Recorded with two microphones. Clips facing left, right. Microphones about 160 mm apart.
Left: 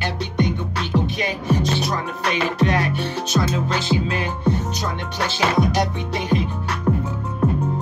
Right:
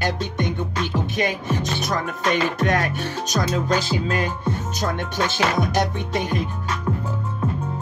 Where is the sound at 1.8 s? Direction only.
45° right (ahead or behind).